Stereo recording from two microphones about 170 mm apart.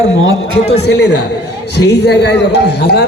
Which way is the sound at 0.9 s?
90° left.